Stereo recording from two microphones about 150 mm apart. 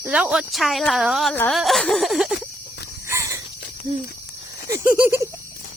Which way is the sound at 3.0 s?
20° right (ahead or behind).